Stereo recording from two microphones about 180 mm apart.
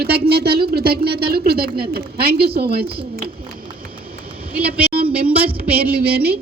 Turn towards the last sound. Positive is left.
turn(degrees=-60)  # may be behind; listen again after turning